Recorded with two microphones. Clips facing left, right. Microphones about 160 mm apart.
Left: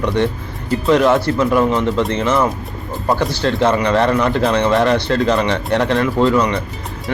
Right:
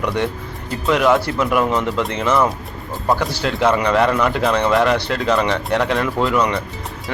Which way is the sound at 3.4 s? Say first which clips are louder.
Left 2 dB; 5° right (ahead or behind).